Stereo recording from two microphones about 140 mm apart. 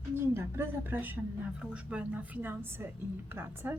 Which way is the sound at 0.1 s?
15° right (ahead or behind).